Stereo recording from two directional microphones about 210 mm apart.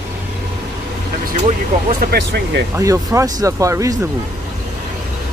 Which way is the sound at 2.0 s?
50° right (ahead or behind).